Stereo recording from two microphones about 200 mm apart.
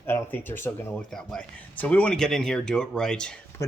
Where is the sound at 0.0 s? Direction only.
10° left (ahead or behind).